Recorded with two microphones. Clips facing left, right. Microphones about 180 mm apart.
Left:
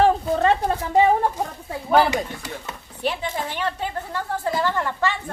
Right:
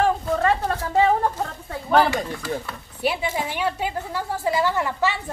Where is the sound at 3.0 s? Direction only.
10° right (ahead or behind).